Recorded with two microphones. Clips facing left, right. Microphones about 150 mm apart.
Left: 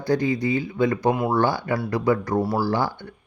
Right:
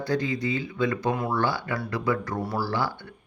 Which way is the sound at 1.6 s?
30° left (ahead or behind).